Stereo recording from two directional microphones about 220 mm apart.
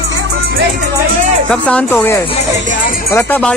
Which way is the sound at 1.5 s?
5° left (ahead or behind).